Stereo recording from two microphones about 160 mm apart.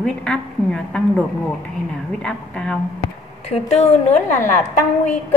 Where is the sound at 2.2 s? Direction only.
5° left (ahead or behind).